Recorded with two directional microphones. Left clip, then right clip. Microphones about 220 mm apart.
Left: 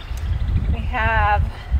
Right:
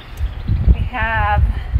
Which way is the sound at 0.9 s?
20° left (ahead or behind).